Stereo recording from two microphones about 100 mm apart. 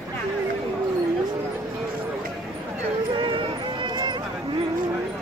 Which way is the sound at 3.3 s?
55° right (ahead or behind).